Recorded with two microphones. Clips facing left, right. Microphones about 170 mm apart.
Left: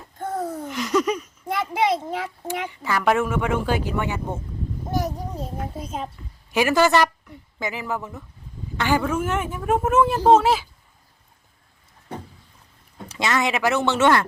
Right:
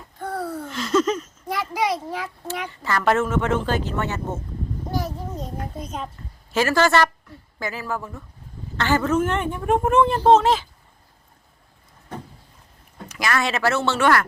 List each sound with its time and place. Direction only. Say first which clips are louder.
0.2 s a sound: left 1 dB; 20° left (ahead or behind)
1.7 s speech: left 3 dB; 20° left (ahead or behind)
5.0 s child singing: left 2 dB; 15° left (ahead or behind)
5.5 s a woman's voice: left 1 dB; 5° left (ahead or behind)
13.1 s speech: left 1 dB; 25° left (ahead or behind)